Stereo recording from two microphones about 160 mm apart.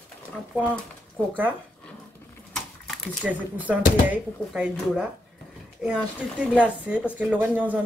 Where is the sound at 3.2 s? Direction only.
5° right (ahead or behind).